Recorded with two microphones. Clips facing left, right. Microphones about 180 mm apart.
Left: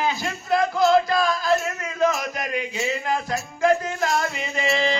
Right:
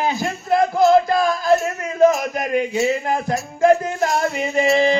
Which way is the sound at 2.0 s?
50° right (ahead or behind).